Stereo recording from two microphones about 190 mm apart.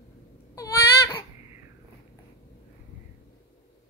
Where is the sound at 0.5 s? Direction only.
15° left (ahead or behind).